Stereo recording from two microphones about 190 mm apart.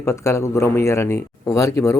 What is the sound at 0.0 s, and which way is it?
Speech, 15° left (ahead or behind).